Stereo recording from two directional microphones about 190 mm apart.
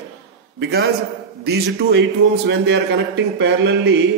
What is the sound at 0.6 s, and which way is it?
A man's voice, 60° right (ahead or behind).